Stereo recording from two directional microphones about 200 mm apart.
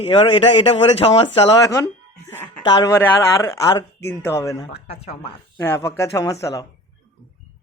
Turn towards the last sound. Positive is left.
turn(degrees=15)  # may be behind; listen again after turning